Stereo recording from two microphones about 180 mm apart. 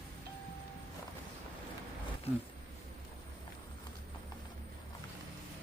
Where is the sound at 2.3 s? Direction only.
35° left (ahead or behind).